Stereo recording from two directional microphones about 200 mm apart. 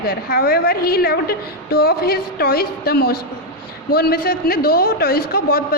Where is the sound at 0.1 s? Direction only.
50° left (ahead or behind).